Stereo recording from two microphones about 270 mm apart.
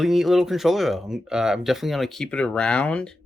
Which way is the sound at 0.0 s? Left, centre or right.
Centre.